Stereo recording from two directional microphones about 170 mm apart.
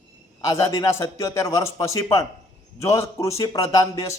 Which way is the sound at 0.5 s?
20° left (ahead or behind).